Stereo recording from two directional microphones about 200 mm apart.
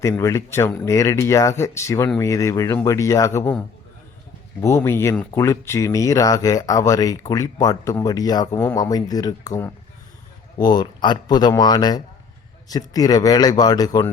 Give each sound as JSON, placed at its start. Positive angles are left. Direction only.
{"t": 0.0, "sound": "speech", "side_deg": 15}
{"t": 4.6, "sound": "speech", "side_deg": 15}